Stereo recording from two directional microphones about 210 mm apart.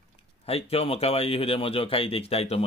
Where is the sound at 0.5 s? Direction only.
30° left (ahead or behind).